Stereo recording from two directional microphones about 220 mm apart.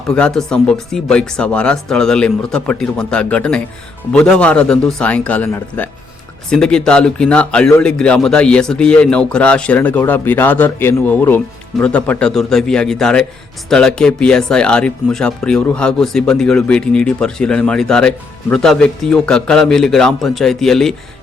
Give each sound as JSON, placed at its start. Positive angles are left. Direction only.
{"t": 0.1, "sound": "speech", "side_deg": 5}